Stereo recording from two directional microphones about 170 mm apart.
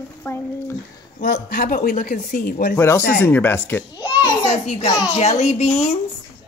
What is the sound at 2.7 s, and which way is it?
A child's voice, 15° left (ahead or behind).